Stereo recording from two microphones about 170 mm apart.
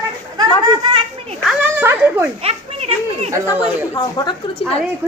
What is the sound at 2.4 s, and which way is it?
Children playing, 35° right (ahead or behind).